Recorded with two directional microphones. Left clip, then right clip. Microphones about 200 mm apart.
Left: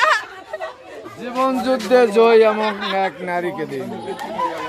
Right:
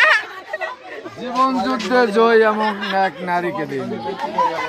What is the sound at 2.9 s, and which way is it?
Speech, 25° right (ahead or behind).